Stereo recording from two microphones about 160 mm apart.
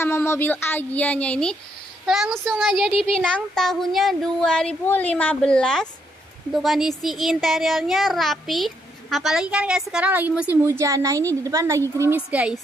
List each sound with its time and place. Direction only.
0.0 s a child's voice: 15° left (ahead or behind); by 12.5 s 10° right (ahead or behind)